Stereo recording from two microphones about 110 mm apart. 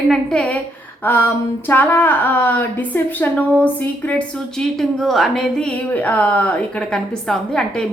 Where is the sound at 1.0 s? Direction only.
20° left (ahead or behind).